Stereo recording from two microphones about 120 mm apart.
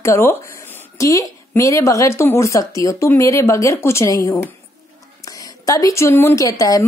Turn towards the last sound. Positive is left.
turn(degrees=25)  # may be behind; listen again after turning